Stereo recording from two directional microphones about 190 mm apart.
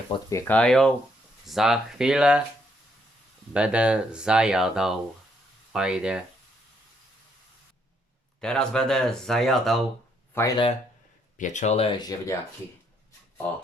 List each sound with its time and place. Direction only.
0.3 s speech: 10° left (ahead or behind); by 2.4 s 5° right (ahead or behind)
3.5 s speech: 5° right (ahead or behind)
8.4 s speech: 5° left (ahead or behind)
10.3 s speech: 10° left (ahead or behind)
11.3 s speech: 40° left (ahead or behind); by 12.4 s 15° left (ahead or behind)